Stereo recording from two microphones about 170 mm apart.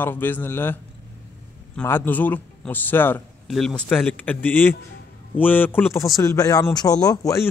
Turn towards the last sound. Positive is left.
turn(degrees=20)  # may be behind; listen again after turning